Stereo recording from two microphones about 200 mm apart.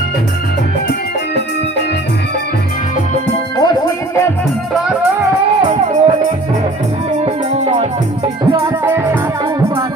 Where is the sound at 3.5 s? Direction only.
20° left (ahead or behind).